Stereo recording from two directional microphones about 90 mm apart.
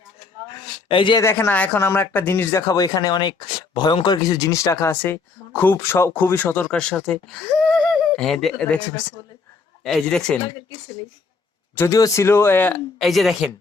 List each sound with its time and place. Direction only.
0.9 s speech: 70° left (ahead or behind)
1.2 s speech: 25° left (ahead or behind)
1.5 s speech: 15° left (ahead or behind)
2.6 s speech: 40° left (ahead or behind); by 8.6 s centre (ahead or behind)
8.6 s speech: 15° left (ahead or behind)
11.9 s speech: 40° left (ahead or behind)
12.2 s speech: 25° left (ahead or behind)
13.0 s speech: centre (ahead or behind)